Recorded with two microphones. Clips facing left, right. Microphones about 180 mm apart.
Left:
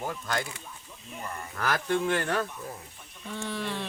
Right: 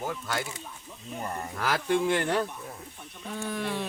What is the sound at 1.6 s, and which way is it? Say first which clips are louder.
Speech: right 1 dB; 10° right (ahead or behind).